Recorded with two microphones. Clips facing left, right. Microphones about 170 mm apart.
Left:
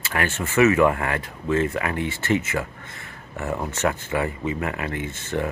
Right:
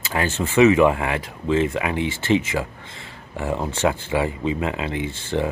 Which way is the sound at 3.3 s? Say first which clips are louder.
Right 3 dB; 10° right (ahead or behind).